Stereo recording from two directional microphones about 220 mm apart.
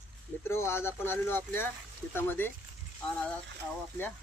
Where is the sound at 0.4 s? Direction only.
10° left (ahead or behind).